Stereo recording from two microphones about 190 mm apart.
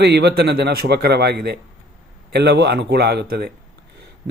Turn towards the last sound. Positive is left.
turn(degrees=-55)  # may be behind; listen again after turning